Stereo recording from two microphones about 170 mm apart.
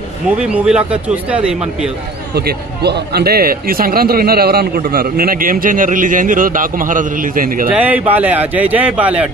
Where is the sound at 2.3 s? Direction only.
70° right (ahead or behind); by 7.7 s 55° right (ahead or behind).